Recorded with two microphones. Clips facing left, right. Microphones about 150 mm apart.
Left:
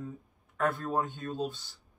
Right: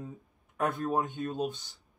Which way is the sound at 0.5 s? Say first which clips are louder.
Right 1 dB; 15° right (ahead or behind).